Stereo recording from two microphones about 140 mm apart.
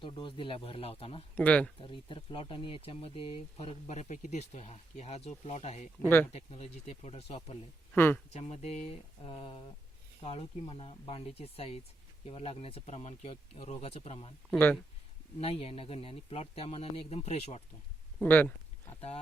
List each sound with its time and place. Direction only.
0.0 s speech: 35° left (ahead or behind)
1.4 s speech: 10° left (ahead or behind)
1.8 s speech: 35° left (ahead or behind)
7.9 s speech: 15° left (ahead or behind)
8.3 s speech: 50° left (ahead or behind)
15.4 s speech: 40° left (ahead or behind)
18.2 s a sound: 10° left (ahead or behind)
18.9 s speech: 45° left (ahead or behind)